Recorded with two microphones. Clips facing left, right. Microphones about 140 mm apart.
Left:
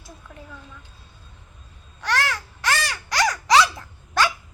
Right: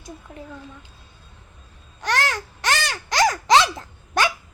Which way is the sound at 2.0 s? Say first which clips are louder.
Right 1 dB; 20° right (ahead or behind).